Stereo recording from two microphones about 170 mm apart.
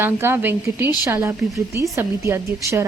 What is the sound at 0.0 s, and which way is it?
Speech, 15° right (ahead or behind).